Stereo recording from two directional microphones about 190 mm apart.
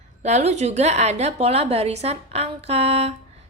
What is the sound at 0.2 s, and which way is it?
A woman's voice, 35° right (ahead or behind).